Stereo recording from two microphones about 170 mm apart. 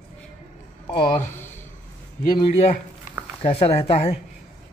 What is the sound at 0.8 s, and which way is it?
Speech, 30° left (ahead or behind).